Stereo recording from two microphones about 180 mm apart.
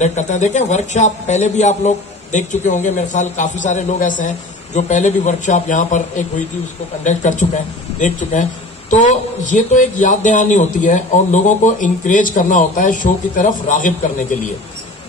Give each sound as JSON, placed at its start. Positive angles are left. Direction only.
{"t": 0.0, "sound": "a man's voice", "side_deg": 40}